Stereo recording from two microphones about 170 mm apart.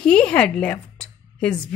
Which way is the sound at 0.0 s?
5° left (ahead or behind).